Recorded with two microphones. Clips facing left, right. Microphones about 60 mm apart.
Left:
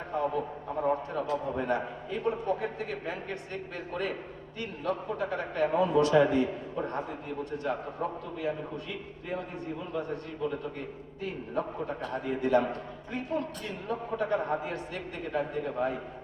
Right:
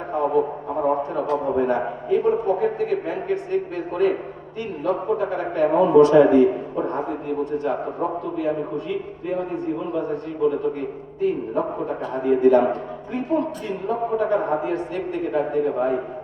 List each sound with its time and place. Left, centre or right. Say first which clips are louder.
0.1 s a man's voice: right 10 dB; right
1.5 s a man's voice: right 9 dB; right
12.2 s a man's voice: right 11 dB; right
14.1 s a man's voice: right 7 dB; right
14.7 s a man's voice: right 12 dB; centre